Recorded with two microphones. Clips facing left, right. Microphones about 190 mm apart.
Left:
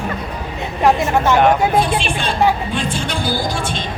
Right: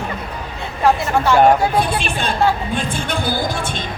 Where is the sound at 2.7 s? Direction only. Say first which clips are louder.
Even; 55° right (ahead or behind).